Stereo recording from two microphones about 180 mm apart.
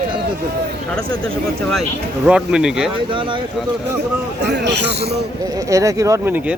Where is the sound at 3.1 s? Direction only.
25° right (ahead or behind).